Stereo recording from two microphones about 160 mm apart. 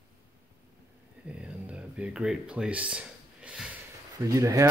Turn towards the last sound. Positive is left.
turn(degrees=-20)  # may be behind; listen again after turning